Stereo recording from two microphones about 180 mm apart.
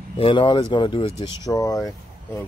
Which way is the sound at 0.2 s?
30° left (ahead or behind).